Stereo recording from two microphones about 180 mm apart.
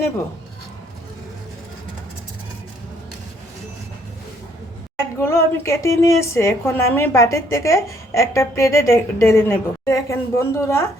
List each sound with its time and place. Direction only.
5.2 s a woman's voice: 15° left (ahead or behind)